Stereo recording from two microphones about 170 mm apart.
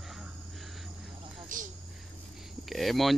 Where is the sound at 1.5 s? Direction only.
50° right (ahead or behind).